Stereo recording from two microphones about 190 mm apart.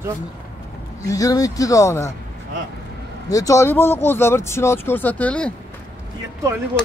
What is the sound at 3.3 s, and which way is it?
Speech, 15° left (ahead or behind).